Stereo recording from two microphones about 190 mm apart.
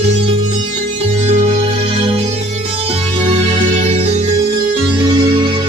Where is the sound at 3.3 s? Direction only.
35° right (ahead or behind).